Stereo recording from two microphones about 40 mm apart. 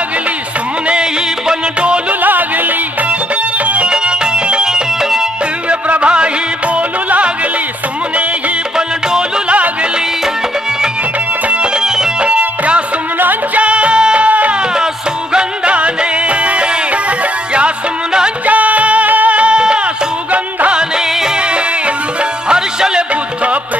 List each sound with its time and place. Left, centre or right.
1.5 s music: right
2.2 s music: right
3.8 s music: right
5.7 s music: right
11.4 s music: right
12.2 s music: right
18.4 s music: right
19.3 s music: right
21.4 s music: right